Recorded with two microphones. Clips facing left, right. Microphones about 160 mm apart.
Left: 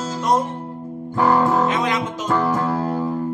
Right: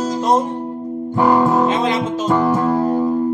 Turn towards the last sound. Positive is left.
turn(degrees=-15)  # may be behind; listen again after turning